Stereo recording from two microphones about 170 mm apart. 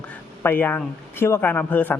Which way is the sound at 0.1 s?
10° left (ahead or behind).